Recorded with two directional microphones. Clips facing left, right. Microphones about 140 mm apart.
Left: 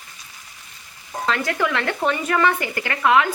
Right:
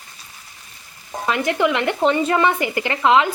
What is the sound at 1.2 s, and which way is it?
Speech, 20° right (ahead or behind).